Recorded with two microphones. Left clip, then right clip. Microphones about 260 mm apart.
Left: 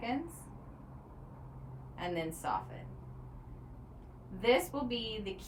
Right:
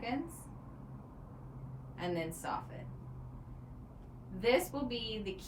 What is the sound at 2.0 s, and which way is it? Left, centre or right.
Speech, centre.